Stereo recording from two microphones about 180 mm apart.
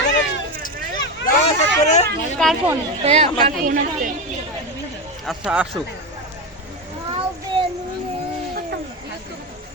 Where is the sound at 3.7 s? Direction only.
50° right (ahead or behind).